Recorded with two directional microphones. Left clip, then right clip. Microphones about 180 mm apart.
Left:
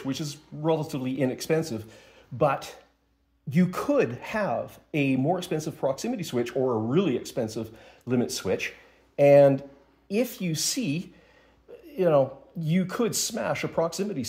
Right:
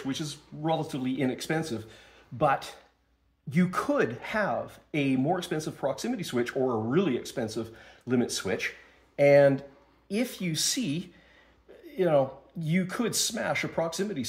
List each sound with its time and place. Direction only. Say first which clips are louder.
0.1 s speech: left 1 dB; 35° left (ahead or behind)